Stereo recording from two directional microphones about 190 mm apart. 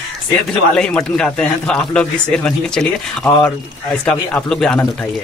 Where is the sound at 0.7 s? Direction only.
5° left (ahead or behind).